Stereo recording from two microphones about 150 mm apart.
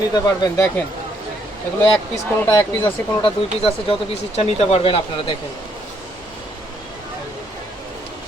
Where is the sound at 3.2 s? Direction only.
40° left (ahead or behind).